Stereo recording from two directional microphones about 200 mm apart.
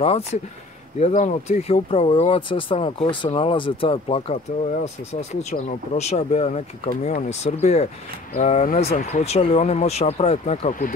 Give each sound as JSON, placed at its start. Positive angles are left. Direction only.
{"t": 0.0, "sound": "speech", "side_deg": 30}